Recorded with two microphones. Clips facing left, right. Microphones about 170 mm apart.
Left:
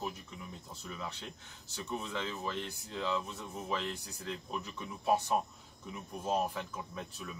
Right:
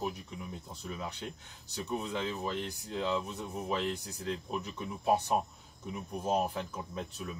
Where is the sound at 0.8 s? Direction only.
15° right (ahead or behind).